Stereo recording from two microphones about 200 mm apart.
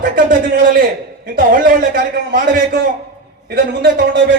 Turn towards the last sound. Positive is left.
turn(degrees=-55)  # may be behind; listen again after turning